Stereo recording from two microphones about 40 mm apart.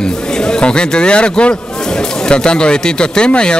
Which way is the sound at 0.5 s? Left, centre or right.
Left.